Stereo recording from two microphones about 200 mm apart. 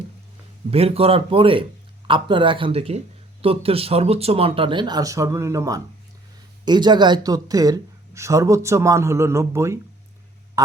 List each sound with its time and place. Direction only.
0.7 s speech: 30° right (ahead or behind); by 9.7 s 15° right (ahead or behind)